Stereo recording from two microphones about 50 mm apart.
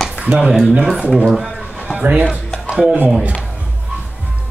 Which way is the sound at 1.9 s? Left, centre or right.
Right.